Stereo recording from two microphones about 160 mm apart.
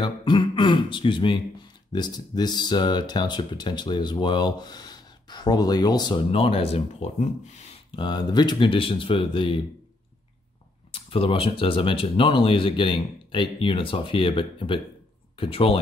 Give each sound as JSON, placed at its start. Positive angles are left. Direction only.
{"t": 0.0, "sound": "throat clearing", "side_deg": 30}
{"t": 1.9, "sound": "speech", "side_deg": 25}
{"t": 7.9, "sound": "speech", "side_deg": 30}
{"t": 10.9, "sound": "speech", "side_deg": 35}